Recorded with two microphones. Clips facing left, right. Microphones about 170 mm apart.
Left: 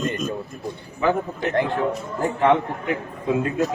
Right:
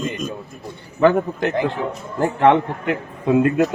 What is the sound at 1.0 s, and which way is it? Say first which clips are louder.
A man's voice: right 6 dB; 75° right (ahead or behind).